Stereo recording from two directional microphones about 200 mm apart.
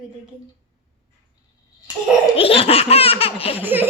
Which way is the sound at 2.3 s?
30° left (ahead or behind).